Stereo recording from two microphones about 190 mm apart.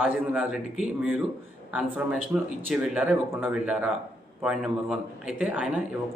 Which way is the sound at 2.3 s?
5° right (ahead or behind).